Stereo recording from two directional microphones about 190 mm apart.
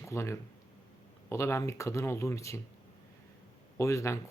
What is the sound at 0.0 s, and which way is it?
Speech, 15° left (ahead or behind).